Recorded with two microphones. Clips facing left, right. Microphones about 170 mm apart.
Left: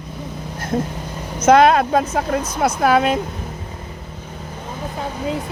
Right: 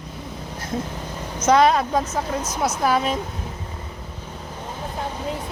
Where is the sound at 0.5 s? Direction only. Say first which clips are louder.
Left 6 dB; 55° left (ahead or behind).